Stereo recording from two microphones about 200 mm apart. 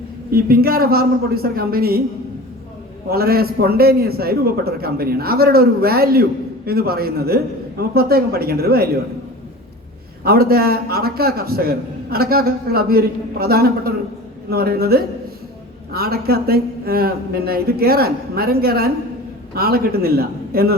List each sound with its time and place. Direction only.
0.3 s a man's voice: 50° right (ahead or behind)
3.1 s a man's voice: 50° right (ahead or behind)
10.2 s a man's voice: 50° right (ahead or behind)